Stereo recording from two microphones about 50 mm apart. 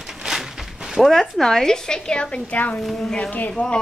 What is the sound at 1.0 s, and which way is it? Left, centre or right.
A woman's voice, centre.